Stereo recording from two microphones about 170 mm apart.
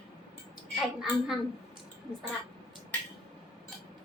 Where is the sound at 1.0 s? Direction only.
Centre (ahead or behind).